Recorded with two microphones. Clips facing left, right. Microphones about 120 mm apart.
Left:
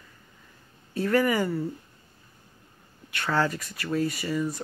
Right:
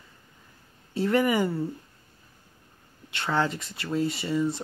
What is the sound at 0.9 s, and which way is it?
Speech, 25° right (ahead or behind).